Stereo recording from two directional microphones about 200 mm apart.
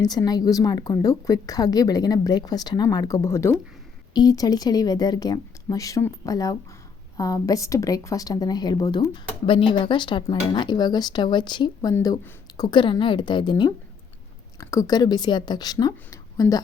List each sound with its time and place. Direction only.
0.0 s a woman's voice: 20° left (ahead or behind)